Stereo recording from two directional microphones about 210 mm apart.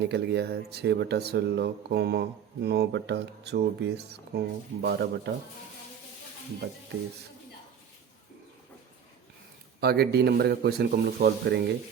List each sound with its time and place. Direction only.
0.0 s speech: 50° right (ahead or behind)
9.8 s speech: 50° right (ahead or behind)